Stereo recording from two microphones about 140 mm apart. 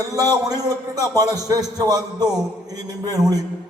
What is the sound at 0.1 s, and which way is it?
A man's voice, 25° right (ahead or behind).